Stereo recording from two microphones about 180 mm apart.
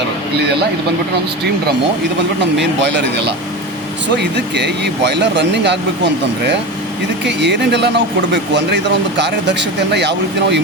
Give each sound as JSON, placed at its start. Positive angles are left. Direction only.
{"t": 2.6, "sound": "speech", "side_deg": -75}
{"t": 7.3, "sound": "speech", "side_deg": -75}